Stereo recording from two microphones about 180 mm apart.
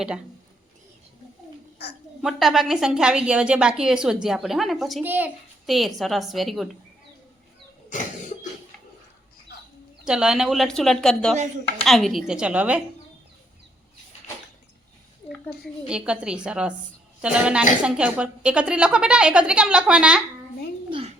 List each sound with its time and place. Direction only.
1.8 s a woman's voice: 65° left (ahead or behind)
2.2 s a woman's voice: centre (ahead or behind)
10.1 s a woman's voice: 5° right (ahead or behind)
15.9 s a woman's voice: 5° right (ahead or behind)